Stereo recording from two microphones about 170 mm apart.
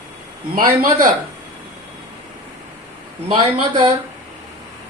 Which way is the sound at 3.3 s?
25° right (ahead or behind).